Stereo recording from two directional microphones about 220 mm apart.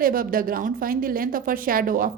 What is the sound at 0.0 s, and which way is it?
A woman's voice, 40° right (ahead or behind).